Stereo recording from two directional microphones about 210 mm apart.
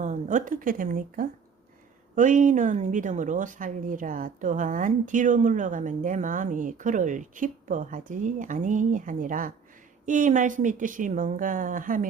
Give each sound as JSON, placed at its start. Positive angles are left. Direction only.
{"t": 0.0, "sound": "a woman's voice", "side_deg": -35}